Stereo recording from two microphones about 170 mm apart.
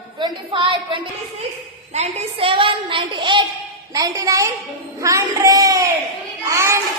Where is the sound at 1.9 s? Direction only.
40° right (ahead or behind); by 6.8 s 15° right (ahead or behind).